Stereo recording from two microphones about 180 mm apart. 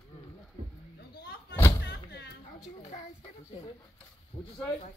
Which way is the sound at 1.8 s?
70° left (ahead or behind).